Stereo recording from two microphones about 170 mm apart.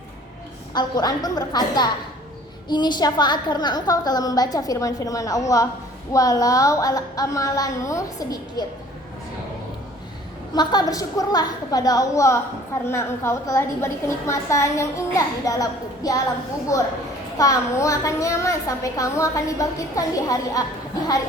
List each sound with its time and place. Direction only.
0.7 s a woman's voice: 25° left (ahead or behind)
10.5 s a woman's voice: 25° left (ahead or behind)